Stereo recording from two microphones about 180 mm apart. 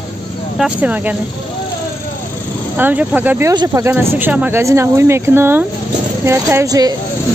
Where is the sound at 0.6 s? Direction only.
5° right (ahead or behind).